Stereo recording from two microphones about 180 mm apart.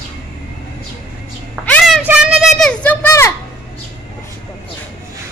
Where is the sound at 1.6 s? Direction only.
5° left (ahead or behind).